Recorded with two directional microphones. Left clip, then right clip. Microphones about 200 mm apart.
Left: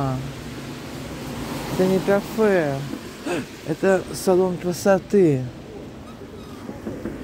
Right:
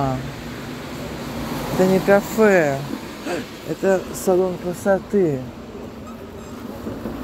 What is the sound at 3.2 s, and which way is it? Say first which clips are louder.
Speech: even; 35° left (ahead or behind).